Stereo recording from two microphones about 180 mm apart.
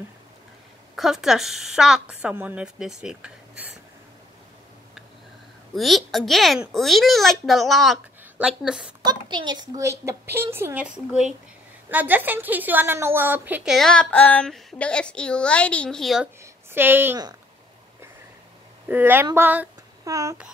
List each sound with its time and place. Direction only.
0.9 s a woman's voice: centre (ahead or behind)
5.8 s a woman's voice: centre (ahead or behind)
9.0 s a woman's voice: 25° right (ahead or behind); by 16.3 s centre (ahead or behind)
16.7 s a woman's voice: 10° right (ahead or behind)
18.9 s a woman's voice: 10° right (ahead or behind)